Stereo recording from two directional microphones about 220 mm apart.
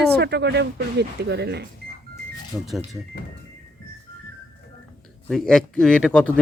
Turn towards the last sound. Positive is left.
turn(degrees=5)  # may be behind; listen again after turning